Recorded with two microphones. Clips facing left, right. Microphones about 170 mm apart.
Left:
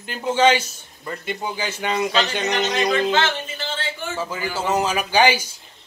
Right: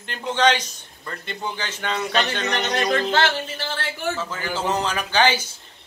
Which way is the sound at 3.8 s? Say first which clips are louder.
Right 2 dB; 70° right (ahead or behind).